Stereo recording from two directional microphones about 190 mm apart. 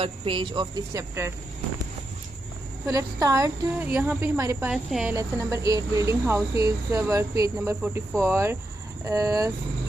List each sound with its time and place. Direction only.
0.0 s speech: 25° right (ahead or behind)
2.9 s cricket: 20° right (ahead or behind)
4.6 s speech: 5° right (ahead or behind)
5.1 s cricket: 15° right (ahead or behind)